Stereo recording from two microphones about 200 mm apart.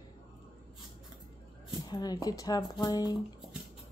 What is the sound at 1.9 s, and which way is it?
Speech, 20° left (ahead or behind).